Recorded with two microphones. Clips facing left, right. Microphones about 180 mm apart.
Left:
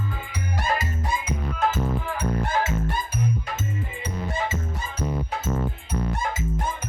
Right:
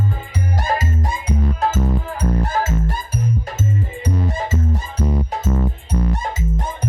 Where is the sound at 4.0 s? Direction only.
40° right (ahead or behind).